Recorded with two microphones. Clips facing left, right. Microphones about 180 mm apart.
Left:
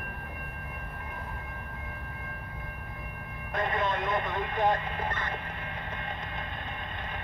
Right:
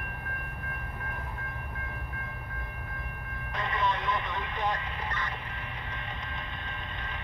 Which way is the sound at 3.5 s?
50° left (ahead or behind).